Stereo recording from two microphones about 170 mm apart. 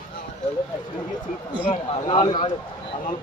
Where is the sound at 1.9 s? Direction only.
30° left (ahead or behind).